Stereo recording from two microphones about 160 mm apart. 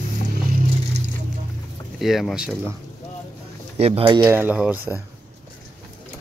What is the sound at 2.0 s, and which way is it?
Speech, centre (ahead or behind).